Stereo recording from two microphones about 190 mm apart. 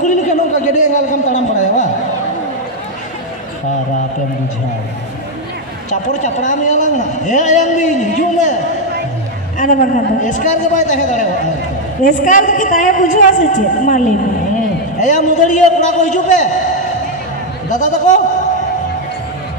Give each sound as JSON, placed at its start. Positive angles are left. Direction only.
{"t": 0.0, "sound": "a sound", "side_deg": 40}
{"t": 5.9, "sound": "a man's voice", "side_deg": 40}
{"t": 9.6, "sound": "a man's voice", "side_deg": 40}
{"t": 17.6, "sound": "a man's voice", "side_deg": 40}